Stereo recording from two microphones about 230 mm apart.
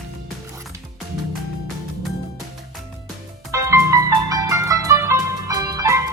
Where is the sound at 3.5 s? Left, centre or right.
Centre.